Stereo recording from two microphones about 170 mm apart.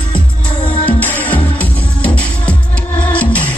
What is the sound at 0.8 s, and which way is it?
Music, 10° left (ahead or behind).